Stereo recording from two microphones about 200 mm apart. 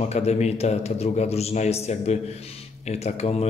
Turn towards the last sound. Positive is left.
turn(degrees=35)  # may be behind; listen again after turning